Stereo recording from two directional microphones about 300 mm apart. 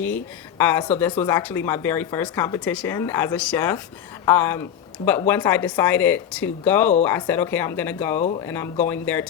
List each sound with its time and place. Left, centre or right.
0.6 s speech: centre
8.2 s speech: centre
8.4 s speech: centre